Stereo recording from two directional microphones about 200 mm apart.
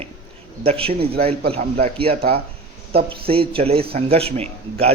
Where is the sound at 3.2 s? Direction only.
25° right (ahead or behind).